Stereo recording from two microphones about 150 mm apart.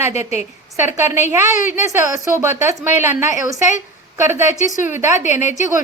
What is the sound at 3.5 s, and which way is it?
Speech, 20° right (ahead or behind).